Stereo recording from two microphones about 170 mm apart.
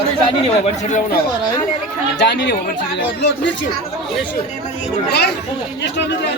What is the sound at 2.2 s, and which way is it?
Speech, 90° left.